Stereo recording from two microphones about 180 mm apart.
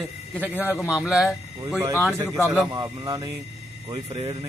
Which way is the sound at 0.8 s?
5° right (ahead or behind).